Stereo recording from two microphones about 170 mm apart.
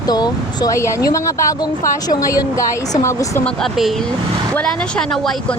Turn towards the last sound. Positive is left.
turn(degrees=5)  # may be behind; listen again after turning